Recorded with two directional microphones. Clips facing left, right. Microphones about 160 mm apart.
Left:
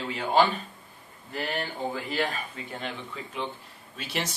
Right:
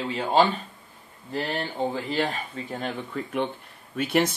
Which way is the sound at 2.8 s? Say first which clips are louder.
Right 6 dB; 55° right (ahead or behind).